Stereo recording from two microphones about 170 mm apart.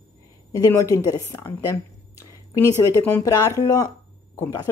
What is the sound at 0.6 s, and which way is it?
Speech, 20° left (ahead or behind).